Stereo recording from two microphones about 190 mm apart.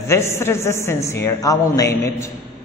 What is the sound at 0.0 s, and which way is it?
A man's voice, 15° left (ahead or behind).